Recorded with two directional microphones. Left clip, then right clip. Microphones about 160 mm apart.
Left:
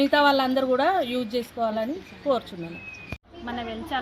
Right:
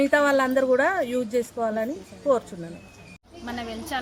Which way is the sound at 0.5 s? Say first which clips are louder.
Right 1 dB; 10° right (ahead or behind).